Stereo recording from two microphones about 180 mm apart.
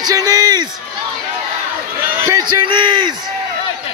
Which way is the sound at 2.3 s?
25° right (ahead or behind).